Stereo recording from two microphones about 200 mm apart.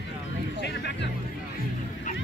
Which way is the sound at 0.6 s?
60° left (ahead or behind).